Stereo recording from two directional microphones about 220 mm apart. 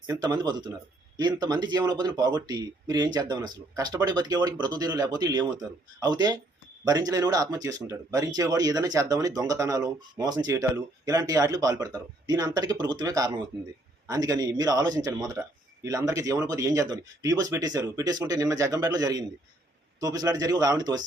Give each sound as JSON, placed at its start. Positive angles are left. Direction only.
{"t": 0.1, "sound": "speech", "side_deg": -20}
{"t": 15.4, "sound": "speech", "side_deg": -5}